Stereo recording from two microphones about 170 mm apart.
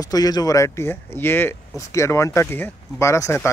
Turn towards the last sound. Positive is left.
turn(degrees=15)  # may be behind; listen again after turning